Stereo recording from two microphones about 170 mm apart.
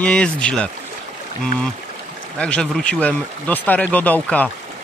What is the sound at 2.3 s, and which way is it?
Speech, 5° left (ahead or behind).